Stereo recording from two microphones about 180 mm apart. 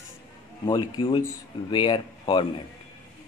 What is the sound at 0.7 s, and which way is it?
Speech, 25° left (ahead or behind).